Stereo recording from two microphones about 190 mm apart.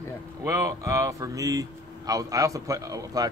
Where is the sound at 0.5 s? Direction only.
15° right (ahead or behind).